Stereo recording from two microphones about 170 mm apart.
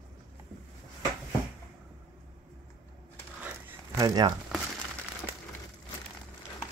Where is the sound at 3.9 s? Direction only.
25° right (ahead or behind).